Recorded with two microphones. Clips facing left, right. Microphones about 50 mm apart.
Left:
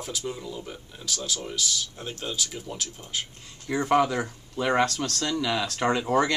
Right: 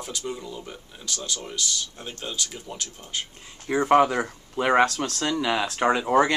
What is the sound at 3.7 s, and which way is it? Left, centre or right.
Speech, right.